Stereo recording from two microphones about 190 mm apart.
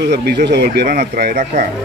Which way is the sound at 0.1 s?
55° right (ahead or behind).